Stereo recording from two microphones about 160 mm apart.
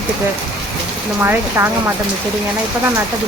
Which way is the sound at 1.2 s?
15° right (ahead or behind).